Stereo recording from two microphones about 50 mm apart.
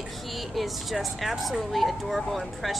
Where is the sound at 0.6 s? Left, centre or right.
Centre.